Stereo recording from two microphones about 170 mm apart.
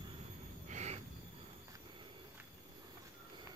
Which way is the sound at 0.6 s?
40° right (ahead or behind).